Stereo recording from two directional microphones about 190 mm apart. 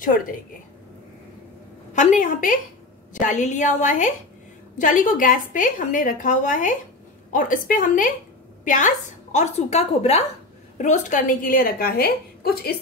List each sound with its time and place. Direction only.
0.0 s a woman's voice: 45° left (ahead or behind)
2.0 s a woman's voice: 45° left (ahead or behind)